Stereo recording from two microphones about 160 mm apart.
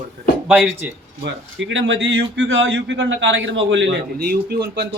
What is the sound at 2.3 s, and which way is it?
Speech, 90° right.